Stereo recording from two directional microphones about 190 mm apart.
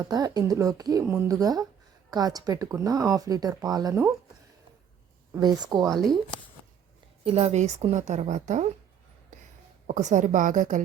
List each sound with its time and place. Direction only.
0.0 s speech: 20° right (ahead or behind)
5.3 s speech: 20° right (ahead or behind)
5.9 s speech: centre (ahead or behind)
7.3 s a woman's voice: 30° right (ahead or behind)
9.8 s a woman's voice: 40° right (ahead or behind)